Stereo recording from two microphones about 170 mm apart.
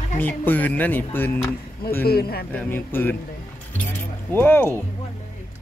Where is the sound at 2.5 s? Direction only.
10° left (ahead or behind).